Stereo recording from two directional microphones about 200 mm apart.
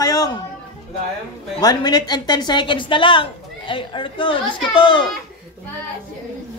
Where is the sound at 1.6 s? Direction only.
20° left (ahead or behind).